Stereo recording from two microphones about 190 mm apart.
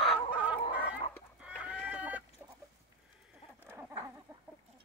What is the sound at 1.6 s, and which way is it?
Chicken, 5° right (ahead or behind).